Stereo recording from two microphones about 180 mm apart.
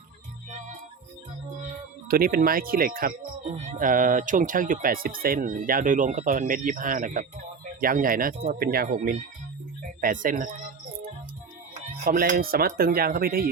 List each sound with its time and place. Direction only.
2.0 s speech: 55° right (ahead or behind)
3.5 s speech: 40° right (ahead or behind)
12.0 s speech: 50° right (ahead or behind)